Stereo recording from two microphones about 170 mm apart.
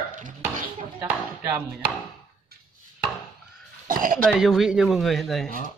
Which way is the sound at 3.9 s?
55° right (ahead or behind).